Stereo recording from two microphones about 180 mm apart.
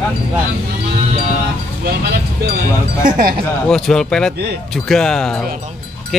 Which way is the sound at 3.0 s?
50° right (ahead or behind).